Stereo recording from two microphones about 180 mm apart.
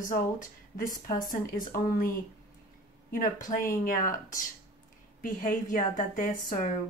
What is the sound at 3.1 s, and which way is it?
Speech, 50° left (ahead or behind).